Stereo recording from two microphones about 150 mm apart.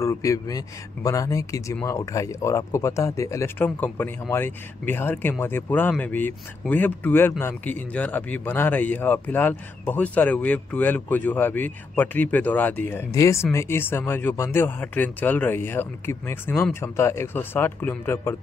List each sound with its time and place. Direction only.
0.0 s a man's voice: 20° left (ahead or behind)